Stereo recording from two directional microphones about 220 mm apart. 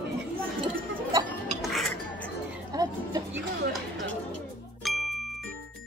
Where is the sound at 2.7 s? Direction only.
15° right (ahead or behind).